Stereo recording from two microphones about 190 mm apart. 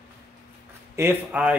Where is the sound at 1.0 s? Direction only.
10° right (ahead or behind).